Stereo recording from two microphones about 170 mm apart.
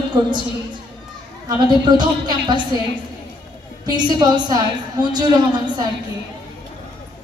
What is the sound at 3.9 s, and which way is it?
A woman's voice, 25° right (ahead or behind).